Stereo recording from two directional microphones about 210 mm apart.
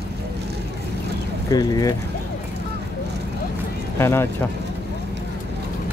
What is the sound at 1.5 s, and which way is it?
Speech, 15° left (ahead or behind).